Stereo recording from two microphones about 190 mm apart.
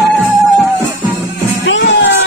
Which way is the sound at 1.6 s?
75° left (ahead or behind).